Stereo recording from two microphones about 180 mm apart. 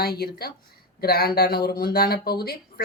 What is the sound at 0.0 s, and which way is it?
Speech, 60° left (ahead or behind).